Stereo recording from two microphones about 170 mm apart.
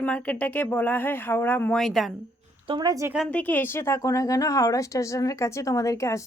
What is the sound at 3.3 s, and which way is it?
Speech, 10° left (ahead or behind).